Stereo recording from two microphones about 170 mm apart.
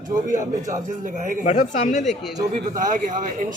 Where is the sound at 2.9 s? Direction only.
50° right (ahead or behind).